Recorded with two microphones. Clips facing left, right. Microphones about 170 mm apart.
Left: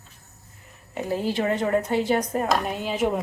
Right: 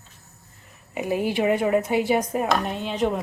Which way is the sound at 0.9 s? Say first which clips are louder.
Right 2 dB; 15° right (ahead or behind).